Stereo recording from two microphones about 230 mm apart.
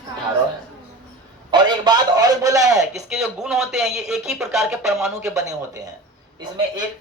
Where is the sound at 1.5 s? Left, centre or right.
Centre.